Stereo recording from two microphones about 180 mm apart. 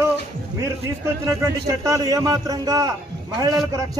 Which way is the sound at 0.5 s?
15° right (ahead or behind).